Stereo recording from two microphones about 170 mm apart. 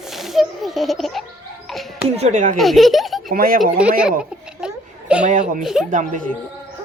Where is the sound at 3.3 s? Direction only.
60° right (ahead or behind).